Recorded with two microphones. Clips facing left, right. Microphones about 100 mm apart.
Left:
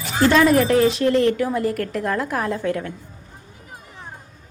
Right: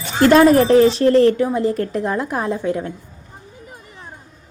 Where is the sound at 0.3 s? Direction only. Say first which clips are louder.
Right 5 dB; 40° right (ahead or behind).